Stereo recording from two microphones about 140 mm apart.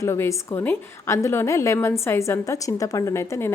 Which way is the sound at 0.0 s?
20° left (ahead or behind).